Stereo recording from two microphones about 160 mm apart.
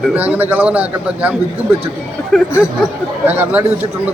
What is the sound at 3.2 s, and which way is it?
Speech, 15° right (ahead or behind).